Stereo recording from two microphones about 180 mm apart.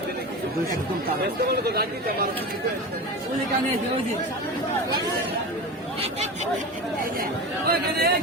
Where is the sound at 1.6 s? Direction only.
60° right (ahead or behind).